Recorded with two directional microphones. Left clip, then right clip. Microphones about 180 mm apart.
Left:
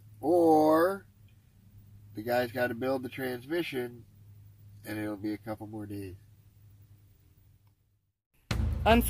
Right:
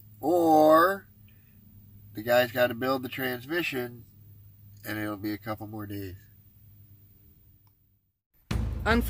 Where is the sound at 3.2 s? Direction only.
25° right (ahead or behind).